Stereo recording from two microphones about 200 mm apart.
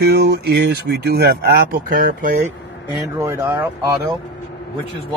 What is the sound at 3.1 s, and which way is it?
Speech, 15° right (ahead or behind).